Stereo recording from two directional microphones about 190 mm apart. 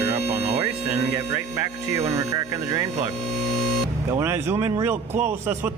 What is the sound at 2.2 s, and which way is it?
Speech, 15° right (ahead or behind).